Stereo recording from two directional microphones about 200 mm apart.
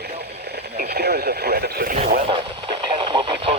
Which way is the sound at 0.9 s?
55° right (ahead or behind).